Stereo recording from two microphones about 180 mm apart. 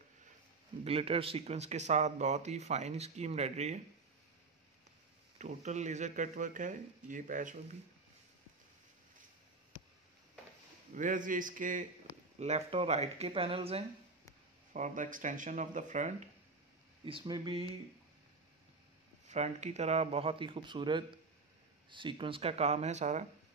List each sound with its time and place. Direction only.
0.8 s speech: 30° right (ahead or behind)
5.4 s speech: 40° right (ahead or behind)
10.9 s speech: 45° right (ahead or behind)
14.7 s speech: 45° right (ahead or behind)
17.2 s speech: 25° right (ahead or behind)
19.2 s speech: 40° right (ahead or behind)